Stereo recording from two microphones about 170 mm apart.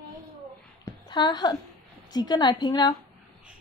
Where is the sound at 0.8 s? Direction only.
25° left (ahead or behind).